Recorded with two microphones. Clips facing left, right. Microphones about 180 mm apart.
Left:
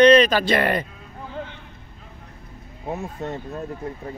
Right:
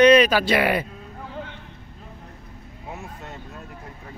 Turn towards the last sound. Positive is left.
turn(degrees=35)  # may be behind; listen again after turning